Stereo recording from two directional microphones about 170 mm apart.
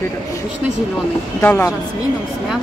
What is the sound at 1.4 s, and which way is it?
Speech, 10° left (ahead or behind).